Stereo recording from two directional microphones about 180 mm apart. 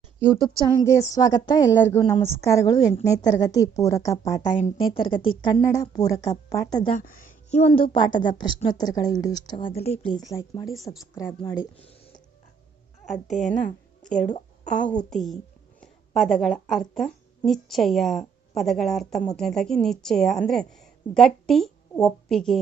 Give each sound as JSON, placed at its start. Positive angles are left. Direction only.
{"t": 0.5, "sound": "speech", "side_deg": -20}
{"t": 0.8, "sound": "a woman's voice", "side_deg": 15}
{"t": 7.0, "sound": "a sound", "side_deg": 50}
{"t": 7.8, "sound": "a woman's voice", "side_deg": 25}
{"t": 10.2, "sound": "a woman's voice", "side_deg": 20}
{"t": 13.2, "sound": "a woman's voice", "side_deg": 0}
{"t": 14.3, "sound": "a woman's voice", "side_deg": 40}
{"t": 14.8, "sound": "a woman's voice", "side_deg": 5}